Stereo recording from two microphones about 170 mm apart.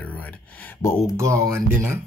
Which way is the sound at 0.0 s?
10° left (ahead or behind).